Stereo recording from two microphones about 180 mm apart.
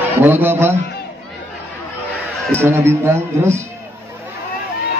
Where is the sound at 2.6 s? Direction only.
15° right (ahead or behind).